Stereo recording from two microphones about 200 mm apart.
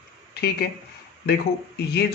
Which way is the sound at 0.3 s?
50° left (ahead or behind).